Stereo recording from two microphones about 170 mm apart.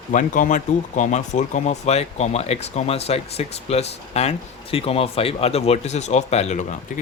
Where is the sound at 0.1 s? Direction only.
50° left (ahead or behind).